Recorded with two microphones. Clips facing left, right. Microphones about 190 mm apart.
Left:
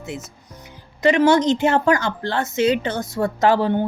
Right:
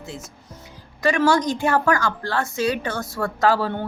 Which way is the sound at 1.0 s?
20° left (ahead or behind).